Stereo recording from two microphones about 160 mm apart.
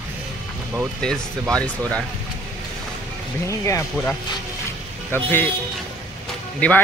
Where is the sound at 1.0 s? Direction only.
5° left (ahead or behind).